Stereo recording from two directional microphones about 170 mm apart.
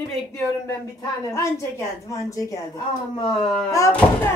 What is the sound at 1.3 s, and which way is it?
A woman's voice, 15° left (ahead or behind).